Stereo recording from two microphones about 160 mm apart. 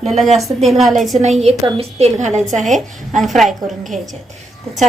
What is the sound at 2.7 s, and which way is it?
Speech, centre (ahead or behind).